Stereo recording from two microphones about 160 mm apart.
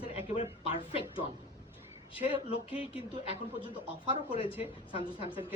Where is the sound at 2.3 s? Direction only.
35° left (ahead or behind).